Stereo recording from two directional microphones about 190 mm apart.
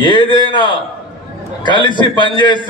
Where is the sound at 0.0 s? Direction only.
25° left (ahead or behind).